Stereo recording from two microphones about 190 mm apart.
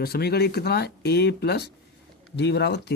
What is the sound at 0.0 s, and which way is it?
Speech, 55° left (ahead or behind).